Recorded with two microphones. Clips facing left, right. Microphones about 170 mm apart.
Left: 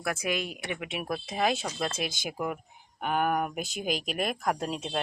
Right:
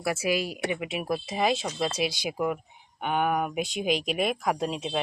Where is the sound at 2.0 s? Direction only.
45° left (ahead or behind).